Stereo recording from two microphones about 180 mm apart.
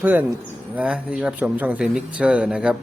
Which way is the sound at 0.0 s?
10° right (ahead or behind).